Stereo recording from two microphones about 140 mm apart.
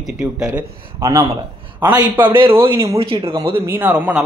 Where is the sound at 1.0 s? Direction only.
20° right (ahead or behind).